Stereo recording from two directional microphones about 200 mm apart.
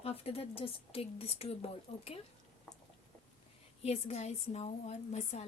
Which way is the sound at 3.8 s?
30° left (ahead or behind).